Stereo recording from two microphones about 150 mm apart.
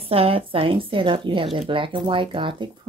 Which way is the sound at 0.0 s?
40° right (ahead or behind).